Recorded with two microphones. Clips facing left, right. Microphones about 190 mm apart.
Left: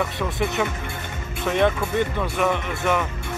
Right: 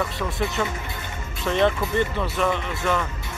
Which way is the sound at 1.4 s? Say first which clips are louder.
Even; 10° left (ahead or behind).